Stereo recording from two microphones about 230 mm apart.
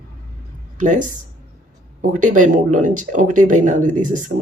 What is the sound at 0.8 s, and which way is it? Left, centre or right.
Speech, right.